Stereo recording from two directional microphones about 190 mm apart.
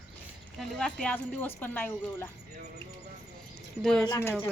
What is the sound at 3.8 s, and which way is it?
Speech, centre (ahead or behind).